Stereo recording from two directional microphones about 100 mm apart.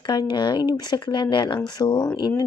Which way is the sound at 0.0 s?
50° left (ahead or behind).